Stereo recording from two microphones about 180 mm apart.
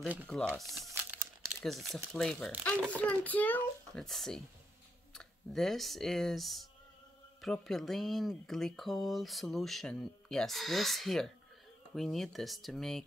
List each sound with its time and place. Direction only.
0.3 s speech: 5° left (ahead or behind)
0.8 s crumpling: 15° right (ahead or behind)
1.6 s speech: centre (ahead or behind)